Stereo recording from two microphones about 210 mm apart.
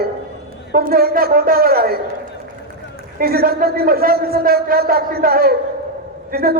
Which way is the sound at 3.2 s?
45° right (ahead or behind).